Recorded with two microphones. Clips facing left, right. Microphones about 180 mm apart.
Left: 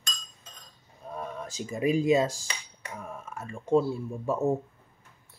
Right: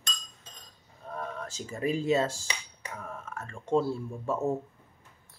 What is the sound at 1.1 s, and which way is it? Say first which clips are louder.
Speech: left 1 dB; 10° left (ahead or behind).